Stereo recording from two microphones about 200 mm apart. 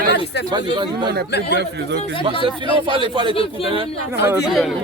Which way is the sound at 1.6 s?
60° right (ahead or behind).